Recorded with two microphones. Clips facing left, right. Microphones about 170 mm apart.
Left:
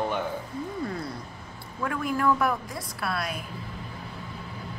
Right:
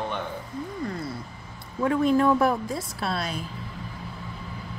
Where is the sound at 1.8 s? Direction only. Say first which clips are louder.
Right 6 dB; 25° right (ahead or behind).